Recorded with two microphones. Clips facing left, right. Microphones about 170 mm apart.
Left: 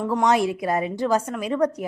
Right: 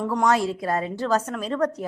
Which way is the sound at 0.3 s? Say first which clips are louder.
Left 2 dB; 15° left (ahead or behind).